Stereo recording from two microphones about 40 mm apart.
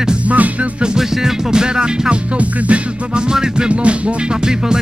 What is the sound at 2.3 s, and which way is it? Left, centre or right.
Music, right.